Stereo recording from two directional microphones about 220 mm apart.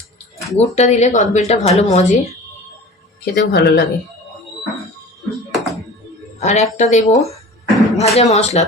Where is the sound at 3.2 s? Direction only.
45° left (ahead or behind).